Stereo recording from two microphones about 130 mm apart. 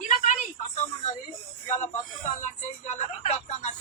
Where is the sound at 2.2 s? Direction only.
65° left (ahead or behind).